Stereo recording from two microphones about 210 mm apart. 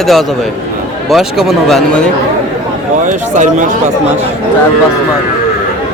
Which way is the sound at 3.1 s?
35° right (ahead or behind).